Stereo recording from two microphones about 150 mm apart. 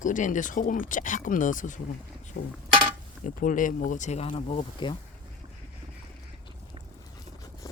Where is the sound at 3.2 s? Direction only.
60° left (ahead or behind).